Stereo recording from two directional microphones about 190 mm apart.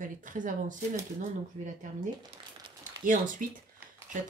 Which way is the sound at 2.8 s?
45° right (ahead or behind).